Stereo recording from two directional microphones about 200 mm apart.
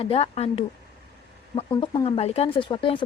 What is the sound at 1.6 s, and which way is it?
Speech, 20° left (ahead or behind).